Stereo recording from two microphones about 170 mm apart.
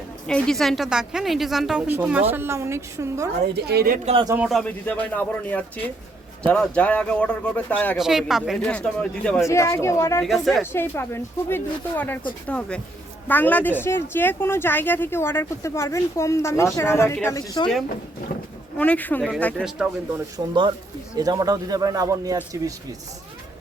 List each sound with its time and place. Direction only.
0.3 s a woman's voice: 5° left (ahead or behind); by 3.2 s 15° right (ahead or behind)
3.5 s a woman's voice: 70° right (ahead or behind)
4.0 s speech: 35° right (ahead or behind)
4.4 s a woman's voice: centre (ahead or behind)
4.6 s a woman's voice: 10° left (ahead or behind)
9.5 s speech: 15° left (ahead or behind)
10.2 s a woman's voice: centre (ahead or behind)
10.7 s speech: 15° left (ahead or behind)
18.8 s speech: 10° left (ahead or behind)
20.1 s speech: 25° right (ahead or behind)